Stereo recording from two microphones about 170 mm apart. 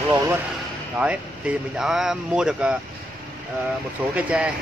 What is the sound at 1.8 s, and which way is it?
Speech, 5° right (ahead or behind).